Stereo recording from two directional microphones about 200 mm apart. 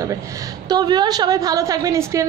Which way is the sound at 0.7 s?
20° right (ahead or behind).